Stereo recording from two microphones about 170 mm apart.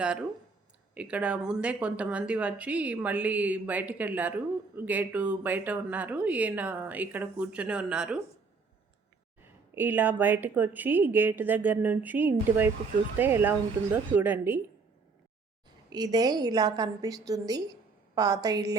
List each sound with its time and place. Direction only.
0.0 s speech: 5° right (ahead or behind)
9.4 s speech: 10° right (ahead or behind)
15.9 s a woman's voice: 25° right (ahead or behind)